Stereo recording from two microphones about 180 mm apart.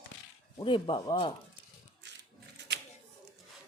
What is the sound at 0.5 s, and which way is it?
Speech, 25° left (ahead or behind).